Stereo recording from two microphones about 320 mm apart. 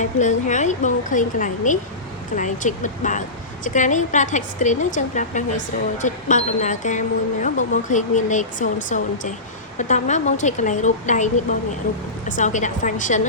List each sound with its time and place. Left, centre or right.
0.0 s a woman's voice: left